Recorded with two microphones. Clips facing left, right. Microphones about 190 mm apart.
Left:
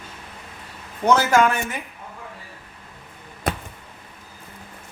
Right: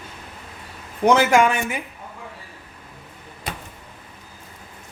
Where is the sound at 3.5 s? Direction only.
50° left (ahead or behind).